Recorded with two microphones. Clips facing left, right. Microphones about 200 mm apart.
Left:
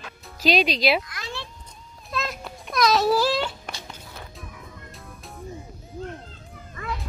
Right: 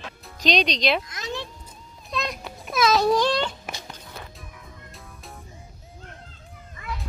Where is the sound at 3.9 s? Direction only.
Centre (ahead or behind).